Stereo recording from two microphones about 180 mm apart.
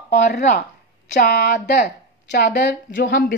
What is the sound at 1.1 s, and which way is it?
A woman's voice, 60° left (ahead or behind).